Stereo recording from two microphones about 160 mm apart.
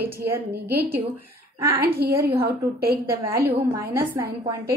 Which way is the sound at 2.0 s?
90° right.